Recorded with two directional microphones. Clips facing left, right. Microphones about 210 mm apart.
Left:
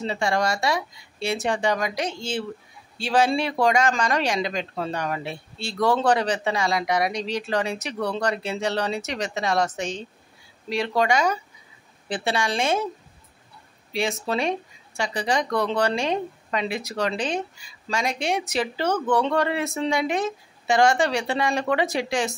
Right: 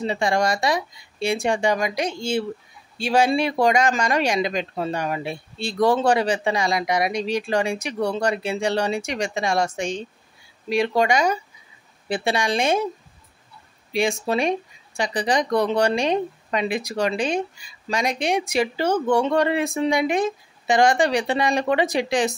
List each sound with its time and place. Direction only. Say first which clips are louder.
0.0 s speech: right 2 dB; 15° right (ahead or behind)
13.9 s speech: right 3 dB; 15° right (ahead or behind)